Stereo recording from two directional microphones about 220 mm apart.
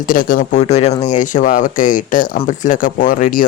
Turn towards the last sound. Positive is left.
turn(degrees=40)  # may be behind; listen again after turning